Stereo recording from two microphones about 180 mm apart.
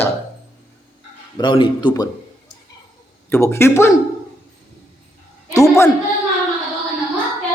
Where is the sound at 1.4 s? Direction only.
25° left (ahead or behind).